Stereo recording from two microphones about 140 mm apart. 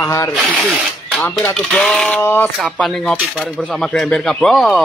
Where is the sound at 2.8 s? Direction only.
5° left (ahead or behind).